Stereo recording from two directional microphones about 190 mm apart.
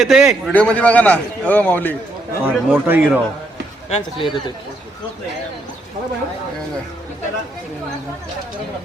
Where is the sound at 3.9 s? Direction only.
25° left (ahead or behind).